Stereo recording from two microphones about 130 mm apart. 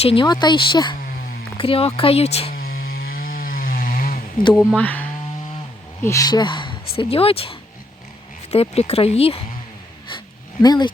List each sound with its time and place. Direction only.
0.0 s speech: 45° left (ahead or behind)
0.3 s speech: 35° left (ahead or behind); by 2.5 s 50° left (ahead or behind)
2.6 s chainsaw: 90° left
4.8 s speech: 10° left (ahead or behind)
6.0 s speech: 25° left (ahead or behind); by 7.5 s 45° left (ahead or behind)
8.7 s speech: 55° left (ahead or behind)
10.6 s speech: 35° left (ahead or behind)